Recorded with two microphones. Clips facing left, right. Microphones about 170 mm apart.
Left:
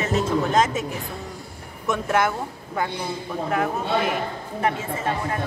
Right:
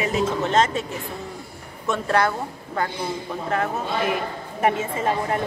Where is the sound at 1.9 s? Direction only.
10° left (ahead or behind).